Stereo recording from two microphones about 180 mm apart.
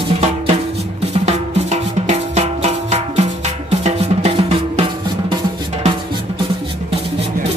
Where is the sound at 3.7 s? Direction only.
35° right (ahead or behind).